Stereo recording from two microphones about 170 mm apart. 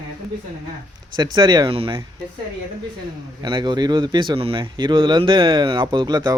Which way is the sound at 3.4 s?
25° right (ahead or behind).